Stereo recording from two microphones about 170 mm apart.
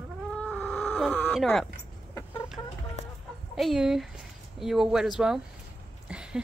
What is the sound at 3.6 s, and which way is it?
Speech, centre (ahead or behind).